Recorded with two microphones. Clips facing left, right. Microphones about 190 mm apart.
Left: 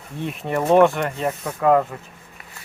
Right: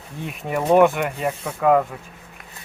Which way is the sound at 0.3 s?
5° right (ahead or behind).